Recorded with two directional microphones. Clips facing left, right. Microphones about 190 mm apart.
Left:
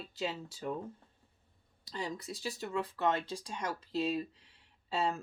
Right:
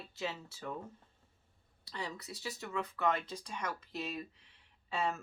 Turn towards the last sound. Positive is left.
turn(degrees=30)  # may be behind; listen again after turning